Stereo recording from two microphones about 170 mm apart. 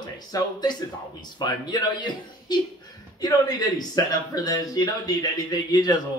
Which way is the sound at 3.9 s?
20° left (ahead or behind).